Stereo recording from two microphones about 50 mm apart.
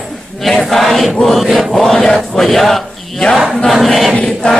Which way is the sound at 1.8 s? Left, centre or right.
Centre.